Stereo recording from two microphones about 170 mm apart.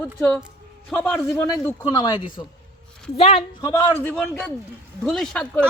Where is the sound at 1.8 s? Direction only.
25° left (ahead or behind).